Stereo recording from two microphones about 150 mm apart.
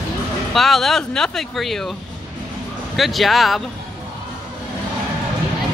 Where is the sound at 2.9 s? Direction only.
Centre (ahead or behind).